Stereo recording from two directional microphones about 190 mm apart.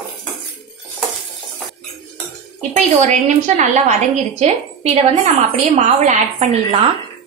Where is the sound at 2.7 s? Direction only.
35° right (ahead or behind).